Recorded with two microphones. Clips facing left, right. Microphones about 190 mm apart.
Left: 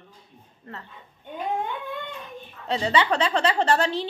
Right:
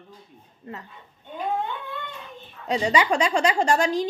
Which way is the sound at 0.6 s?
10° right (ahead or behind).